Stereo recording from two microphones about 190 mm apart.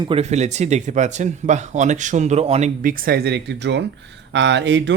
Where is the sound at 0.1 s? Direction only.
35° right (ahead or behind).